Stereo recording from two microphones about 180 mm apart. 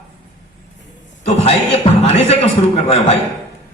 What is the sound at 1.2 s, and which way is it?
A man's voice, 35° left (ahead or behind).